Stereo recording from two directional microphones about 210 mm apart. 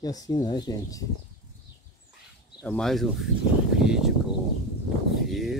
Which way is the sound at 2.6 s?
5° left (ahead or behind).